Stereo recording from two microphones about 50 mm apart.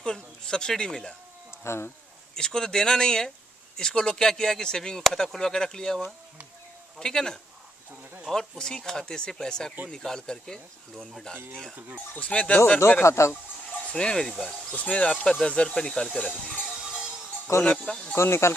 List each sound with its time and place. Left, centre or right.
0.0 s speech: centre
1.6 s speech: left
2.3 s speech: centre
12.3 s speech: left
13.0 s speech: left
13.9 s speech: centre
14.8 s speech: left
16.7 s music: centre
17.7 s speech: centre
18.1 s speech: left